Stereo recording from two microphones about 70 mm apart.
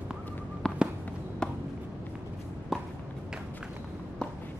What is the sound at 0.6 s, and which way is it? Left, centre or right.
Fireworks, centre.